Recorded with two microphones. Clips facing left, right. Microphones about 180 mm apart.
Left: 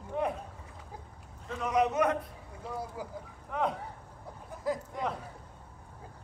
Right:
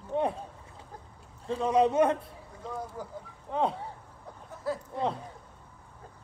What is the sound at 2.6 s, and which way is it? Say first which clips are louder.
Vehicle: right 1 dB; 10° left (ahead or behind).